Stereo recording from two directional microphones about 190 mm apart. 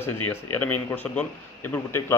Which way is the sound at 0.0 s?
10° left (ahead or behind).